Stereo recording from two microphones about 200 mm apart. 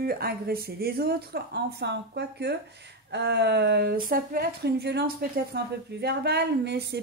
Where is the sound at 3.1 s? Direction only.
60° right (ahead or behind).